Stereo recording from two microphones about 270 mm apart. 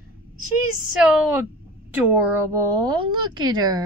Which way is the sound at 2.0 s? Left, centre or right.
Centre.